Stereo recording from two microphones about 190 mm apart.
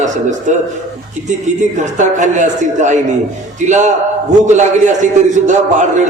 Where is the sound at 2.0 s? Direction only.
40° right (ahead or behind).